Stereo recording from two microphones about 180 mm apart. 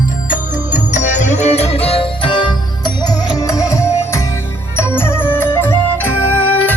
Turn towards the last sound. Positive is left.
turn(degrees=10)  # may be behind; listen again after turning